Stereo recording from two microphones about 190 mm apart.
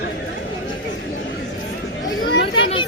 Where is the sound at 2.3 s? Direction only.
65° left (ahead or behind).